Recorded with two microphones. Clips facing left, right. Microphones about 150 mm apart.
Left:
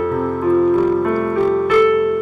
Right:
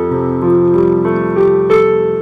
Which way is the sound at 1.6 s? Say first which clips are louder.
Right 4 dB; 35° right (ahead or behind).